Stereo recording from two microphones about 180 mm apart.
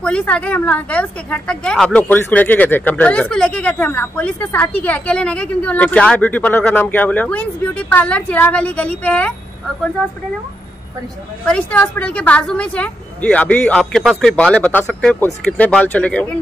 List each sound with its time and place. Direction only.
0.0 s a woman's voice: 5° left (ahead or behind)
11.4 s a woman's voice: 5° left (ahead or behind)